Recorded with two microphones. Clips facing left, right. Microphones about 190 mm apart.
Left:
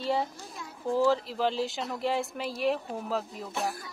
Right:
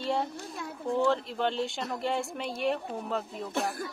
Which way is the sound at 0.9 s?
Centre (ahead or behind).